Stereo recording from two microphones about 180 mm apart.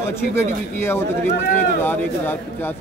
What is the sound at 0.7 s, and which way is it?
Speech, 15° left (ahead or behind).